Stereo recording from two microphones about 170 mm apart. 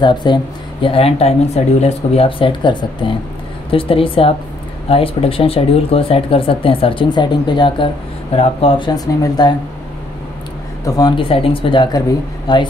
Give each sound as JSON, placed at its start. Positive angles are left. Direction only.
{"t": 0.0, "sound": "speech", "side_deg": 25}
{"t": 10.9, "sound": "speech", "side_deg": 25}